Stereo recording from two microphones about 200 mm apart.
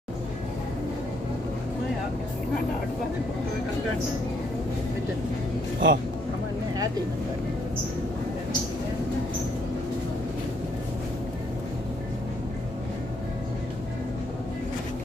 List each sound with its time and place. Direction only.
5.8 s speech: 65° right (ahead or behind)